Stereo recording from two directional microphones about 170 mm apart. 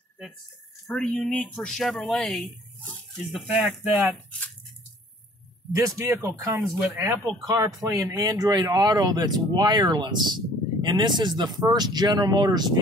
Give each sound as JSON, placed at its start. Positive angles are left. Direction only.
{"t": 0.8, "sound": "speech", "side_deg": 5}
{"t": 5.7, "sound": "speech", "side_deg": -20}